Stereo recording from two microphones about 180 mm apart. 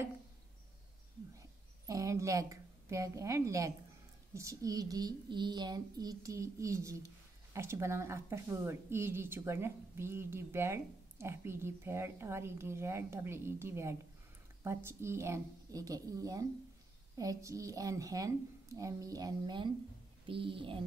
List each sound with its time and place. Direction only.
1.9 s a woman's voice: 20° right (ahead or behind)